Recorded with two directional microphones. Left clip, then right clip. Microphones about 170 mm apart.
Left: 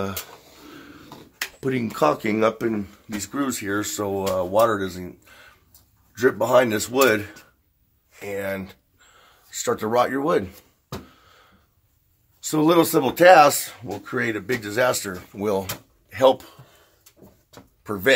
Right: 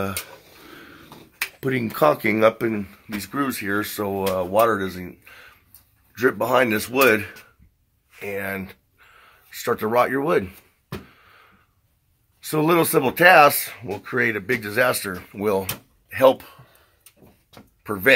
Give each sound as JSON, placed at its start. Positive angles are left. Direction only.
{"t": 0.7, "sound": "a sound", "side_deg": -15}
{"t": 1.6, "sound": "speech", "side_deg": -15}
{"t": 12.4, "sound": "speech", "side_deg": -20}
{"t": 17.8, "sound": "speech", "side_deg": -25}